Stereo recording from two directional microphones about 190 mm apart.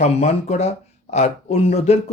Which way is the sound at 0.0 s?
35° left (ahead or behind).